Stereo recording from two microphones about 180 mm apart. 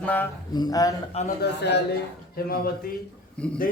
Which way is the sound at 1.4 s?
70° left (ahead or behind).